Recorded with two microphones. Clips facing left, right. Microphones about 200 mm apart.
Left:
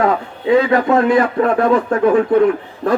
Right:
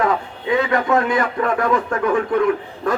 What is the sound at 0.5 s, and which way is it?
A man's voice, 30° left (ahead or behind).